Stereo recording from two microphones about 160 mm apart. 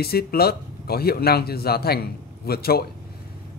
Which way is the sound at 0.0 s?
75° left (ahead or behind).